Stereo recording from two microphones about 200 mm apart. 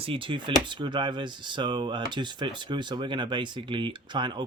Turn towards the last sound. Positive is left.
turn(degrees=-25)  # may be behind; listen again after turning